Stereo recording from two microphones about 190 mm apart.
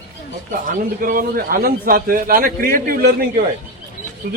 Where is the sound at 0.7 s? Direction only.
45° right (ahead or behind).